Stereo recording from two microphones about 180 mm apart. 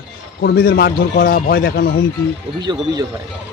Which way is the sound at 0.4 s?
55° left (ahead or behind).